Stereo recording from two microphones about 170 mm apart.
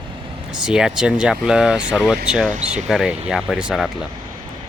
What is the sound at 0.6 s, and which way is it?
Speech, 5° right (ahead or behind).